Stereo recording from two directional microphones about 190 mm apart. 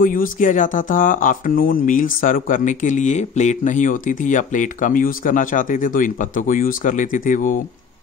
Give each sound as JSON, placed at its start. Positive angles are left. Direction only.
{"t": 0.0, "sound": "speech", "side_deg": 45}